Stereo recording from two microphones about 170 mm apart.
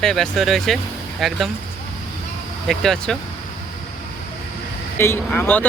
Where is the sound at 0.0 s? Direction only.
5° left (ahead or behind).